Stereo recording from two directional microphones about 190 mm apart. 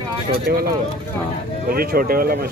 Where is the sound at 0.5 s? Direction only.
55° right (ahead or behind).